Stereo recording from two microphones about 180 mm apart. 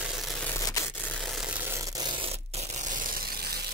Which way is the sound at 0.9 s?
5° left (ahead or behind).